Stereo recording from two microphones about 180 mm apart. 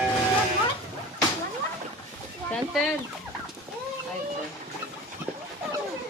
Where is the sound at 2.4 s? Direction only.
5° left (ahead or behind).